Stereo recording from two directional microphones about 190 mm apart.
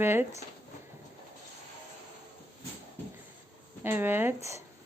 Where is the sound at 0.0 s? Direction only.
10° right (ahead or behind).